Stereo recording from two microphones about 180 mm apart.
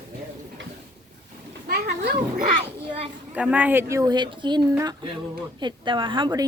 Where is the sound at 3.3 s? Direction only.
5° right (ahead or behind); by 6.5 s 25° right (ahead or behind).